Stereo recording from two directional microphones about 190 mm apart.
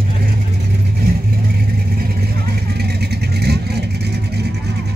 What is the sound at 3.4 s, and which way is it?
Vehicle, 60° right (ahead or behind).